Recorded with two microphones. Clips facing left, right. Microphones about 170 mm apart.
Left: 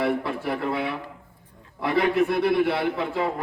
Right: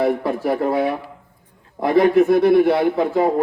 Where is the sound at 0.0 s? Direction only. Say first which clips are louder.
Right 6 dB; 40° right (ahead or behind).